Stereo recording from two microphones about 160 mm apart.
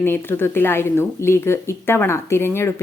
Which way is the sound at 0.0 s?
15° left (ahead or behind).